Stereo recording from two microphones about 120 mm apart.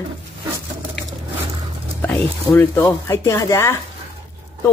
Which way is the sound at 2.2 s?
15° left (ahead or behind).